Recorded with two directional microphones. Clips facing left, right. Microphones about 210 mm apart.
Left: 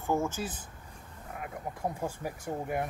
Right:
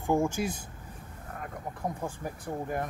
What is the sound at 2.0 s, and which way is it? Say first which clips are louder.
Speech: left 1 dB; 10° left (ahead or behind).